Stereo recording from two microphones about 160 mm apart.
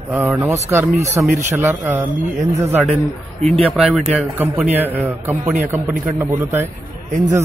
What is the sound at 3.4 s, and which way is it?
Speech, 45° right (ahead or behind).